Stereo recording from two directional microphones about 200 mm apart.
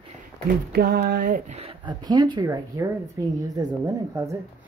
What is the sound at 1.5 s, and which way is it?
Speech, 30° right (ahead or behind).